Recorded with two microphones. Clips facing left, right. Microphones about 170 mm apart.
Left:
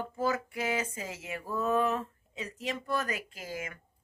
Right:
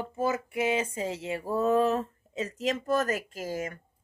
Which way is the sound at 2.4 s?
90° right.